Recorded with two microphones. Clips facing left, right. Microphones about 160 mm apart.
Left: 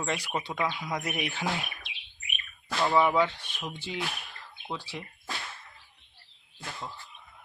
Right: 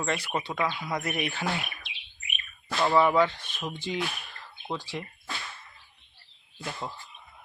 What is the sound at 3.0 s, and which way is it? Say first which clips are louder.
Speech: right 3 dB; 10° left (ahead or behind).